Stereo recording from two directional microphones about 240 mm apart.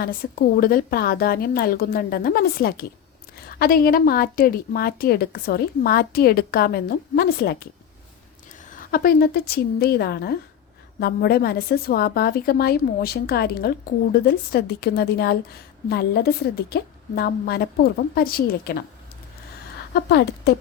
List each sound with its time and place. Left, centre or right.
0.0 s a woman's voice: left
8.7 s a woman's voice: left
19.9 s speech: left